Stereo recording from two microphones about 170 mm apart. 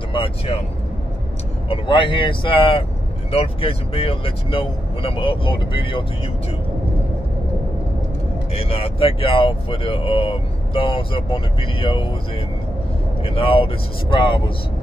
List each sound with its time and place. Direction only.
0.1 s speech: 30° left (ahead or behind)
1.7 s speech: 30° left (ahead or behind)
8.5 s speech: 35° left (ahead or behind)
13.2 s speech: 35° left (ahead or behind)